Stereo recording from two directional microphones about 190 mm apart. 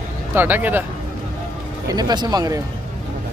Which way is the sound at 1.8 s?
20° right (ahead or behind).